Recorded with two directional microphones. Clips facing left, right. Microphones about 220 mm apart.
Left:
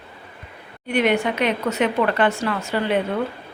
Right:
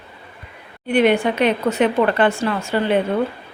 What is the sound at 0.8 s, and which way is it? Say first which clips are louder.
A woman's voice: right 4 dB; 30° right (ahead or behind).